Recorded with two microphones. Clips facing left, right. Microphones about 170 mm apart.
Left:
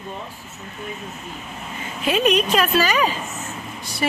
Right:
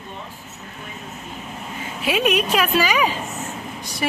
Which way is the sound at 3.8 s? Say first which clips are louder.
Left 2 dB; 15° right (ahead or behind).